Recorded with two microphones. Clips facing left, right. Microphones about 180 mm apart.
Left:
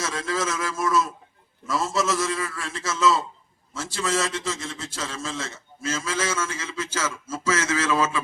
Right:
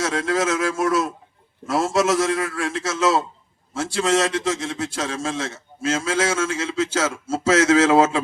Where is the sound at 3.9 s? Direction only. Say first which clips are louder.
Right 6 dB; 85° right.